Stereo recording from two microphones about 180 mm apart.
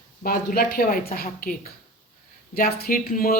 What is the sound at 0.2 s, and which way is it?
Speech, 55° left (ahead or behind).